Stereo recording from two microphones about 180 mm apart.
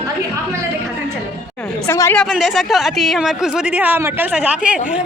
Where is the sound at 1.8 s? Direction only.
15° left (ahead or behind).